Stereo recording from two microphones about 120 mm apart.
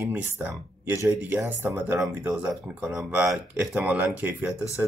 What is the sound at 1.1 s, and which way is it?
Speech, 15° right (ahead or behind).